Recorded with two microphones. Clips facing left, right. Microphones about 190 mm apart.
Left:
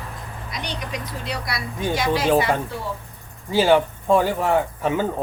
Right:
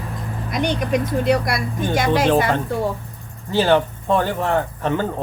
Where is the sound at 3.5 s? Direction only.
10° left (ahead or behind).